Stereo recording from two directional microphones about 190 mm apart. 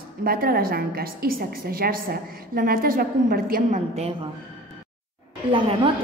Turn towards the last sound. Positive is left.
turn(degrees=-25)  # may be behind; listen again after turning